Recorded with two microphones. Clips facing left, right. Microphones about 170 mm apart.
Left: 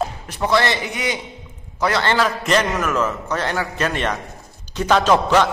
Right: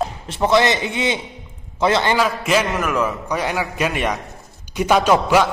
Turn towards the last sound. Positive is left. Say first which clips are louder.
# right 1 dB
turn(degrees=-10)  # may be behind; listen again after turning